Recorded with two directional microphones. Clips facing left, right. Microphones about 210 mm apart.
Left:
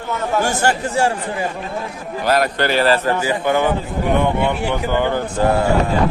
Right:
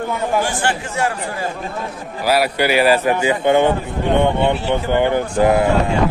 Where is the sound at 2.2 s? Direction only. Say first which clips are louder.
Right 1 dB; 10° right (ahead or behind).